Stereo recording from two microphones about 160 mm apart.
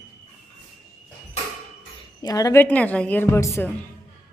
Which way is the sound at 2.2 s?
25° left (ahead or behind).